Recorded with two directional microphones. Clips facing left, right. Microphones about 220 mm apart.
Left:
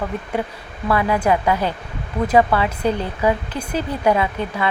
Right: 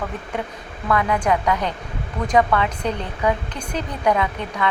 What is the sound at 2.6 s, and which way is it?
Speech, 5° left (ahead or behind).